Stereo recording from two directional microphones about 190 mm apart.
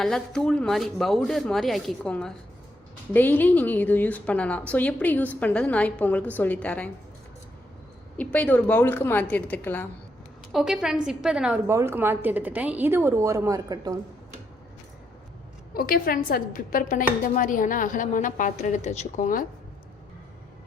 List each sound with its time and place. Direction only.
0.0 s a woman's voice: 5° left (ahead or behind)
8.1 s a woman's voice: 5° left (ahead or behind)
10.5 s a woman's voice: centre (ahead or behind); by 13.9 s 20° right (ahead or behind)
15.7 s a woman's voice: 50° left (ahead or behind)